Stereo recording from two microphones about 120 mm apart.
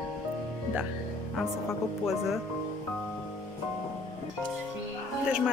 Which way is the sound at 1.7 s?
5° right (ahead or behind).